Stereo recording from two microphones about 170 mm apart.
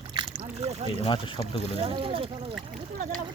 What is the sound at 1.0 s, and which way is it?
Speech, 30° left (ahead or behind).